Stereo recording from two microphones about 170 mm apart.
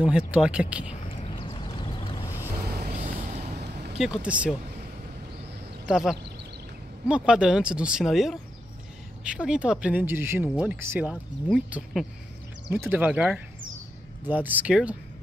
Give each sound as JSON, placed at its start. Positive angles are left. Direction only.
{"t": 0.0, "sound": "speech", "side_deg": -5}
{"t": 1.0, "sound": "vehicle", "side_deg": 35}
{"t": 2.5, "sound": "boat", "side_deg": -65}
{"t": 2.9, "sound": "a sound", "side_deg": -45}
{"t": 3.5, "sound": "vehicle", "side_deg": -75}
{"t": 4.0, "sound": "speech", "side_deg": -5}
{"t": 5.9, "sound": "speech", "side_deg": 0}